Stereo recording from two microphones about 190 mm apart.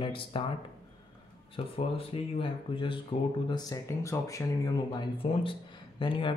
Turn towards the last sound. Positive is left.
turn(degrees=25)  # may be behind; listen again after turning